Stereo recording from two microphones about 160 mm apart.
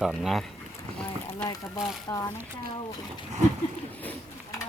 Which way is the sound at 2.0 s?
20° left (ahead or behind).